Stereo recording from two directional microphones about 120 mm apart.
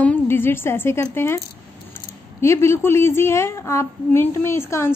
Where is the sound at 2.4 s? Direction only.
20° left (ahead or behind).